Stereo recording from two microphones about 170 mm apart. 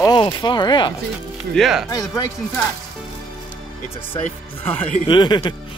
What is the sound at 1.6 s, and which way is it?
Speech, centre (ahead or behind).